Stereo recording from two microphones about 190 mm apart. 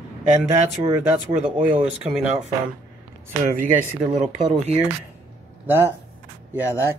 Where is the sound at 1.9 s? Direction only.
5° right (ahead or behind).